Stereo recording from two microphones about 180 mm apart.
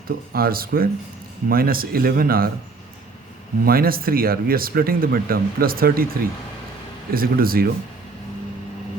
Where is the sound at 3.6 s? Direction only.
55° right (ahead or behind).